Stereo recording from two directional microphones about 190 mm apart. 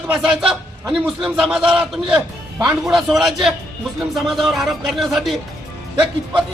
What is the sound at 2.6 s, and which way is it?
Speech, 20° right (ahead or behind).